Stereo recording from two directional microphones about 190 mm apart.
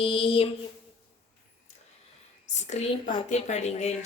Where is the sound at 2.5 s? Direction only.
35° left (ahead or behind).